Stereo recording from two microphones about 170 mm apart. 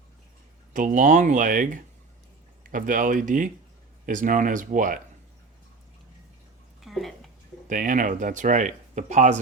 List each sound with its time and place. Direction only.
0.7 s speech: 50° right (ahead or behind)
6.8 s a sound: centre (ahead or behind)
7.7 s speech: 50° right (ahead or behind)